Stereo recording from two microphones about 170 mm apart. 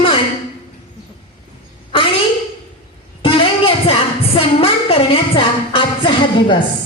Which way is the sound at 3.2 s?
30° left (ahead or behind).